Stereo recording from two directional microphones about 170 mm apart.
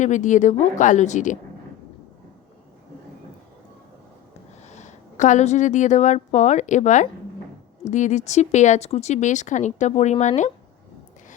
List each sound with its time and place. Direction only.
0.0 s speech: 45° left (ahead or behind)
4.7 s a woman's voice: 45° left (ahead or behind)